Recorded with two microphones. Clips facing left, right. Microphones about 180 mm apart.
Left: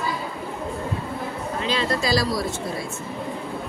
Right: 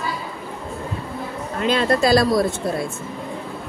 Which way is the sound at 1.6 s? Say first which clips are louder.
Right 7 dB; 55° right (ahead or behind).